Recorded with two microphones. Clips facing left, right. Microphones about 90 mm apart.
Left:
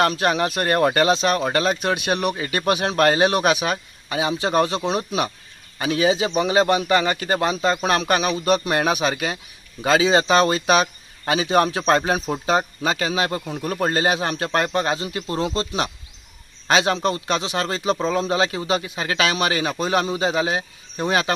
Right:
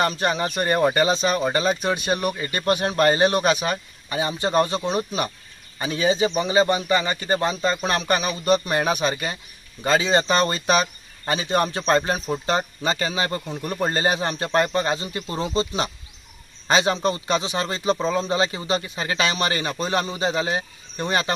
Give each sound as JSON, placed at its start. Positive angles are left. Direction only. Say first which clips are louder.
{"t": 0.0, "sound": "speech", "louder": "left 3 dB", "side_deg": 0}
{"t": 3.2, "sound": "speech", "louder": "left 1 dB", "side_deg": 5}